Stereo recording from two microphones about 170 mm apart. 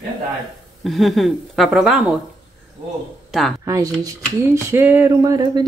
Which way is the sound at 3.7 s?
15° right (ahead or behind).